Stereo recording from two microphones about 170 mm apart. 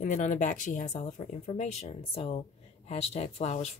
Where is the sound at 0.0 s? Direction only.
45° left (ahead or behind).